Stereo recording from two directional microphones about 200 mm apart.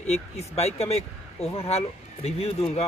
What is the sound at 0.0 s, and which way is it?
Speech, 30° left (ahead or behind).